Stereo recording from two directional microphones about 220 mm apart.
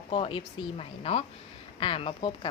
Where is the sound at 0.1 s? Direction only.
25° left (ahead or behind).